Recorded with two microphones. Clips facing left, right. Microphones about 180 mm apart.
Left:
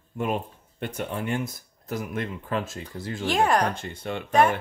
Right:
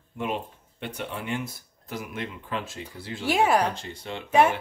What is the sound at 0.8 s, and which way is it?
Cutlery, 45° left (ahead or behind).